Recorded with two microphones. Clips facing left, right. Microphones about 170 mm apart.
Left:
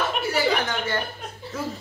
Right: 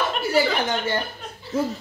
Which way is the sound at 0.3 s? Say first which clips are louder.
Right 3 dB; 25° right (ahead or behind).